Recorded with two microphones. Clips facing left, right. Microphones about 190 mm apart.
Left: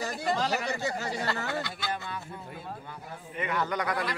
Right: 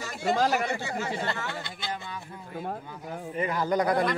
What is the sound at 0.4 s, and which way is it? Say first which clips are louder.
Speech: right 5 dB; 55° right (ahead or behind).